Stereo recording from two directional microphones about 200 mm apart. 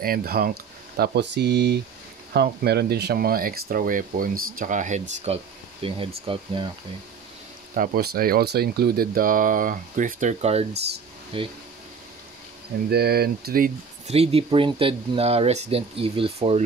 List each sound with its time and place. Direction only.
0.0 s speech: 50° right (ahead or behind); by 6.7 s 25° right (ahead or behind)
7.7 s speech: 45° right (ahead or behind); by 11.5 s 25° right (ahead or behind)
12.9 s speech: 50° right (ahead or behind)
14.0 s speech: 30° right (ahead or behind)